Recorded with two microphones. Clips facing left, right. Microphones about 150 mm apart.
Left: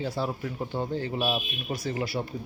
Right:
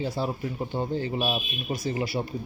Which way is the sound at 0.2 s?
15° right (ahead or behind).